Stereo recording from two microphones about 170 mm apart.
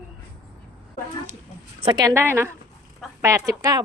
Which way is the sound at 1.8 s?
25° right (ahead or behind).